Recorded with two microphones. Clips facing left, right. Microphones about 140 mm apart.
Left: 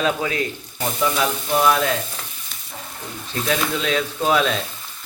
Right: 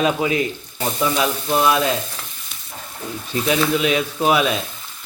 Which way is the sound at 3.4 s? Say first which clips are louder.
Right 4 dB; 15° right (ahead or behind).